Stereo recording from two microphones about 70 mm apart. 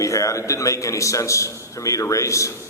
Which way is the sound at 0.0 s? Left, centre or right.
Left.